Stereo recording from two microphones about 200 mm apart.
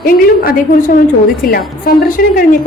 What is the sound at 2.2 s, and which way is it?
Speech, 45° left (ahead or behind).